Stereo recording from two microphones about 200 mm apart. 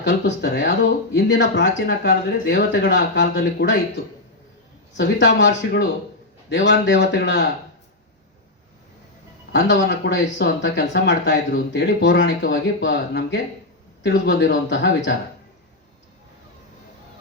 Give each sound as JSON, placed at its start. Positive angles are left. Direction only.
{"t": 0.0, "sound": "speech", "side_deg": 60}
{"t": 4.9, "sound": "speech", "side_deg": 60}
{"t": 9.5, "sound": "speech", "side_deg": 55}